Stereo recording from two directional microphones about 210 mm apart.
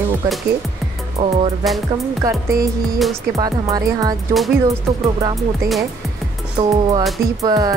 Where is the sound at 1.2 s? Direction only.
25° right (ahead or behind).